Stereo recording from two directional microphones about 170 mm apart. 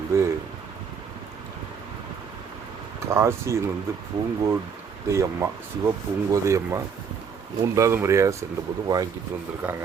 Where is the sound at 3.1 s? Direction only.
15° right (ahead or behind).